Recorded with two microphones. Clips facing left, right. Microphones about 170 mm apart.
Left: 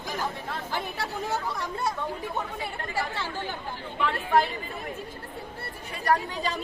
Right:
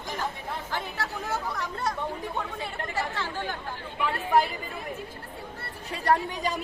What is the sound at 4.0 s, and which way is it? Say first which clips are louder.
Speech: even; 10° right (ahead or behind).